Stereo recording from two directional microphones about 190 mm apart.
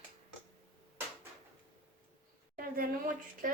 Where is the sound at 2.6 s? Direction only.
45° right (ahead or behind).